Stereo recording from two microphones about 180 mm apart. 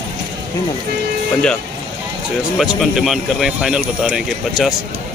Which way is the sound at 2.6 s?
Centre (ahead or behind).